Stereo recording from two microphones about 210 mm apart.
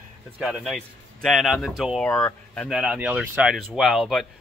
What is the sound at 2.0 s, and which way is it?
Speech, 10° left (ahead or behind).